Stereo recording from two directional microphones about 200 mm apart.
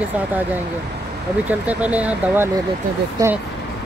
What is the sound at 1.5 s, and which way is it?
Speech, 5° right (ahead or behind).